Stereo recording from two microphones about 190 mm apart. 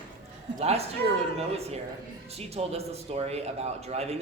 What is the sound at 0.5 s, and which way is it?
Speech, 35° right (ahead or behind).